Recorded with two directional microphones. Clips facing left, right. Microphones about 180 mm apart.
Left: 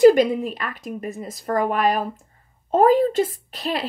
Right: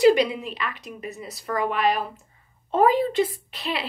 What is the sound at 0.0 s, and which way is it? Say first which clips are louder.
A woman's voice: left 5 dB; 45° left (ahead or behind).